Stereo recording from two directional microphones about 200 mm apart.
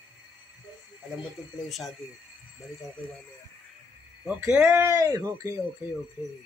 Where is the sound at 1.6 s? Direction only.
Centre (ahead or behind).